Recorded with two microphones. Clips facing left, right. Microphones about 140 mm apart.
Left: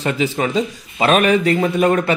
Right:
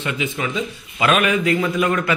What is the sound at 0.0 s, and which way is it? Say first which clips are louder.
Speech: left 5 dB; 35° left (ahead or behind).